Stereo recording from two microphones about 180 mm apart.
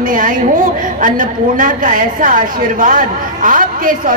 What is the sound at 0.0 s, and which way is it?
A woman's voice, 50° right (ahead or behind).